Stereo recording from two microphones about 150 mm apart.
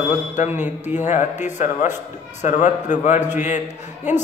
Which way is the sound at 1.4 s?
55° left (ahead or behind).